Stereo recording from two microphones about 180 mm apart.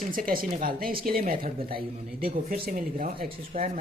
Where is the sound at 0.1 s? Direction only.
50° right (ahead or behind).